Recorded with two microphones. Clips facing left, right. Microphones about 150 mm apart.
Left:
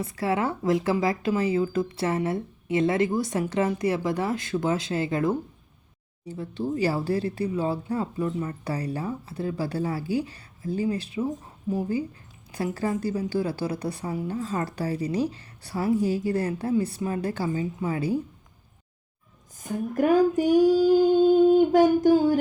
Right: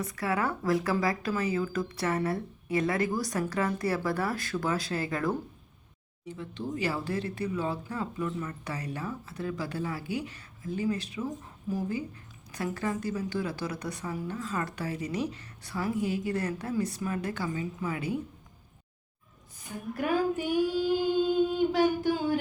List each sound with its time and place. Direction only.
0.0 s a woman's voice: 25° left (ahead or behind)
6.2 s a woman's voice: 35° left (ahead or behind)
19.5 s child singing: 45° left (ahead or behind)